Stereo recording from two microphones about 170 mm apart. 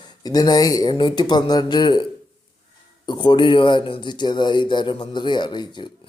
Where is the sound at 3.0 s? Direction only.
25° left (ahead or behind).